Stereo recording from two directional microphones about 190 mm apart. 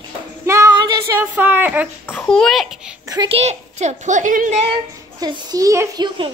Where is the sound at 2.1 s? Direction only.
5° left (ahead or behind).